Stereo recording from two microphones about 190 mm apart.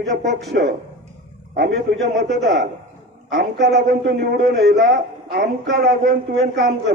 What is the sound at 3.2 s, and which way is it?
A man's voice, 60° right (ahead or behind).